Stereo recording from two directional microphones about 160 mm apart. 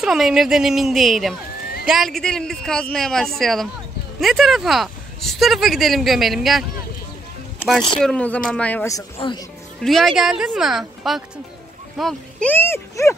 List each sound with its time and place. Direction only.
0.0 s speech: 5° right (ahead or behind)
8.0 s speech: 5° left (ahead or behind)
9.2 s speech: 35° left (ahead or behind)
9.8 s speech: centre (ahead or behind)